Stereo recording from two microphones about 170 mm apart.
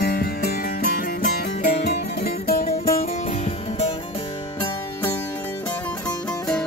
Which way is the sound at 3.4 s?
35° left (ahead or behind).